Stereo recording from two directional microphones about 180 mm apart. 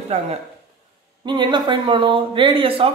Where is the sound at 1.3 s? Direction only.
25° right (ahead or behind).